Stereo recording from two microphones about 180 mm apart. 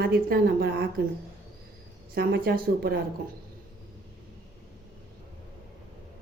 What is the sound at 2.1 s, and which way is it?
Speech, 55° right (ahead or behind).